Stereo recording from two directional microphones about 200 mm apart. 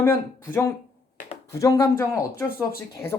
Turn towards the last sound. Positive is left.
turn(degrees=15)  # may be behind; listen again after turning